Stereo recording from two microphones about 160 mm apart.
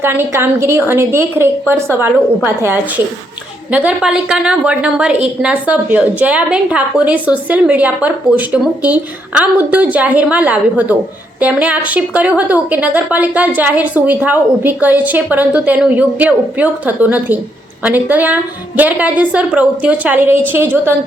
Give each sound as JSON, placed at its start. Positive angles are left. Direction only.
{"t": 0.0, "sound": "a woman's voice", "side_deg": -15}